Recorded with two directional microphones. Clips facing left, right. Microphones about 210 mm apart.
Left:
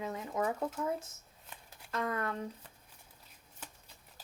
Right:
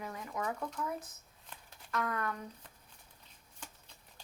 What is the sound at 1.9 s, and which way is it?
Speech, 25° left (ahead or behind).